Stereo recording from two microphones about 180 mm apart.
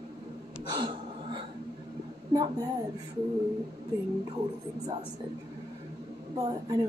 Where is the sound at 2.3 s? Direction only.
20° right (ahead or behind).